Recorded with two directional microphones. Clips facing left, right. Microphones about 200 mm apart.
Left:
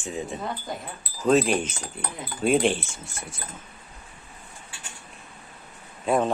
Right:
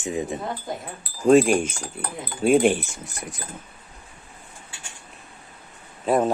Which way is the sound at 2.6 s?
15° right (ahead or behind).